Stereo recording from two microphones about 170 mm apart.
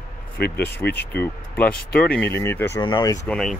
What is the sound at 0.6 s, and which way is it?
Speech, 10° left (ahead or behind).